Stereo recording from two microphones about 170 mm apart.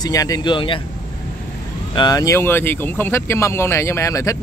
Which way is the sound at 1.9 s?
20° left (ahead or behind).